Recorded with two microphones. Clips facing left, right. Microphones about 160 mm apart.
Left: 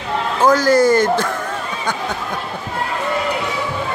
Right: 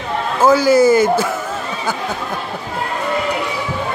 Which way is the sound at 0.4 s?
10° right (ahead or behind).